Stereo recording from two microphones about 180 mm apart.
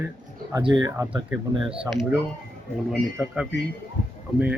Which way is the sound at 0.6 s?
25° right (ahead or behind).